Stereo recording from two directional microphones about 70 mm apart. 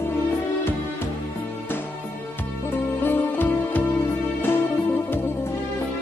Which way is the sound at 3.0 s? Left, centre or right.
Left.